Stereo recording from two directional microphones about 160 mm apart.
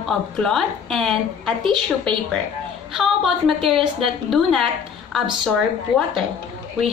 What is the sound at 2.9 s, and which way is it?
A woman's voice, centre (ahead or behind).